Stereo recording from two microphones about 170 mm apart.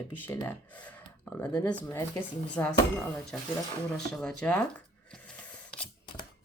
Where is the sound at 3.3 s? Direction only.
Centre (ahead or behind).